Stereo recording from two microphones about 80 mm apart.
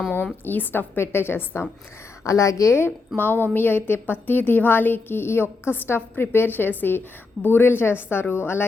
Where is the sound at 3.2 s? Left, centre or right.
Left.